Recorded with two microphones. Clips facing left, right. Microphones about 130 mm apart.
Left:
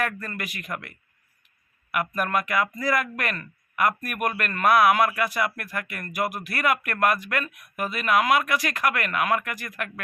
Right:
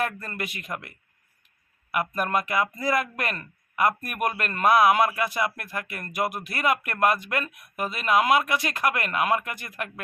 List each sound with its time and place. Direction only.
0.0 s speech: 25° right (ahead or behind)
1.9 s speech: 25° right (ahead or behind)